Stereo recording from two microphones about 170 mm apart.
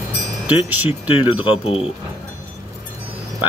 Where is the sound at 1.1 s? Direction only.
30° left (ahead or behind).